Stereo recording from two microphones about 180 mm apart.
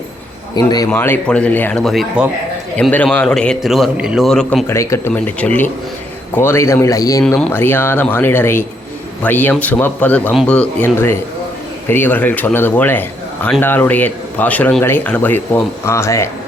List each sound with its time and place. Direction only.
0.5 s a man's voice: 20° left (ahead or behind)
0.9 s a man's voice: 10° left (ahead or behind)